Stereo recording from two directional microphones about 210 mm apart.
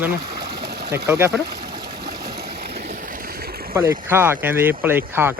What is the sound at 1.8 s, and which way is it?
Stream, 50° right (ahead or behind).